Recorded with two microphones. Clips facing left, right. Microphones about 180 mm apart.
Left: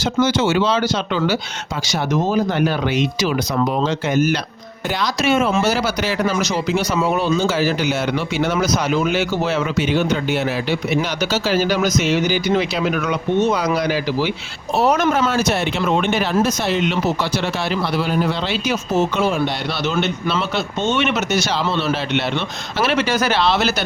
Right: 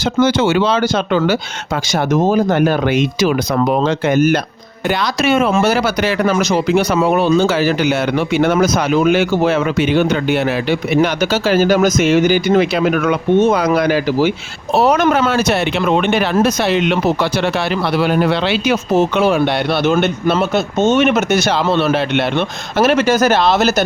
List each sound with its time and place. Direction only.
0.0 s speech: 55° right (ahead or behind)
14.7 s speech: 70° right (ahead or behind); by 23.8 s 45° right (ahead or behind)